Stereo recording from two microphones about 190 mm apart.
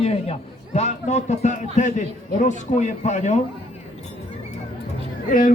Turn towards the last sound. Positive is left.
turn(degrees=45)  # may be behind; listen again after turning